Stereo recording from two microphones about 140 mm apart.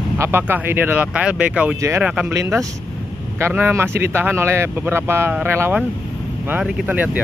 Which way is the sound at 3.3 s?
15° right (ahead or behind).